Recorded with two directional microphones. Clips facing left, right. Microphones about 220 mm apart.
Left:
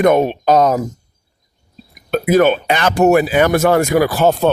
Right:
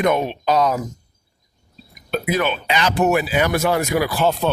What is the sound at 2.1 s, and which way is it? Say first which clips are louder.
Speech: left 9 dB; 45° left (ahead or behind).